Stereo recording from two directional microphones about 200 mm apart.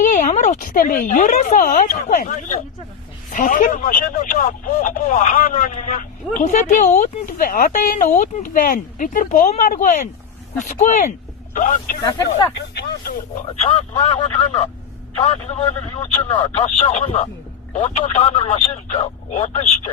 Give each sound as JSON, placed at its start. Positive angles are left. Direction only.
{"t": 0.0, "sound": "speech", "side_deg": 40}
{"t": 12.0, "sound": "speech", "side_deg": 20}
{"t": 12.5, "sound": "speech", "side_deg": 55}
{"t": 13.6, "sound": "speech", "side_deg": 30}
{"t": 16.0, "sound": "speech", "side_deg": 30}